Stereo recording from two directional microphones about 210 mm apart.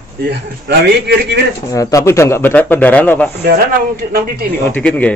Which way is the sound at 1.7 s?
15° left (ahead or behind).